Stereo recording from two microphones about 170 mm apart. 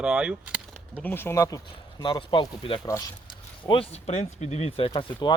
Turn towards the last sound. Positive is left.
turn(degrees=25)  # may be behind; listen again after turning